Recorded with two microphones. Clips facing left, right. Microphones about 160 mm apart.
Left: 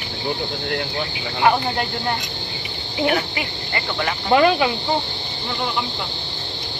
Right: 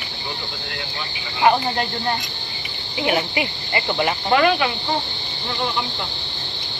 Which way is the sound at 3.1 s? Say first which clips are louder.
Right 3 dB; 15° right (ahead or behind).